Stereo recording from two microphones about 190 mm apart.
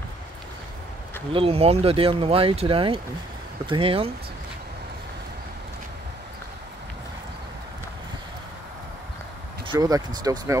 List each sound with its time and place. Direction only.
1.3 s speech: 30° right (ahead or behind)
9.7 s speech: 20° right (ahead or behind)